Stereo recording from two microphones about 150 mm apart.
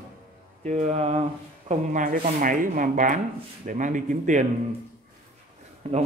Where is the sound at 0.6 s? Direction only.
50° right (ahead or behind).